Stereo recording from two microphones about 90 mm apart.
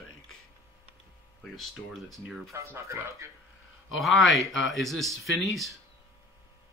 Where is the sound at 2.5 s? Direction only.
30° right (ahead or behind).